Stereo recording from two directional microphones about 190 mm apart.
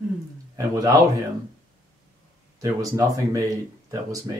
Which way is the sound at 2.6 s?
20° right (ahead or behind).